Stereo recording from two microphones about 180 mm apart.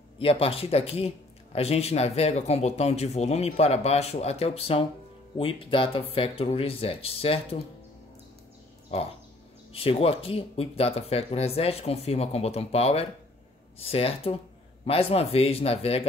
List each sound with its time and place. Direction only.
0.2 s speech: 30° left (ahead or behind)
9.7 s speech: 30° left (ahead or behind)